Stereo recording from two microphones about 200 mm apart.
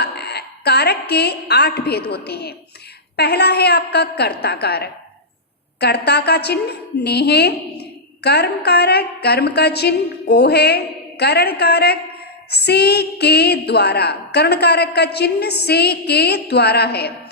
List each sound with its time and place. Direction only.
0.0 s a woman's voice: 55° left (ahead or behind)